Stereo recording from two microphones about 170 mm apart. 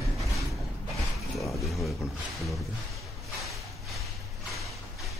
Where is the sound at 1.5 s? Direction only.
Centre (ahead or behind).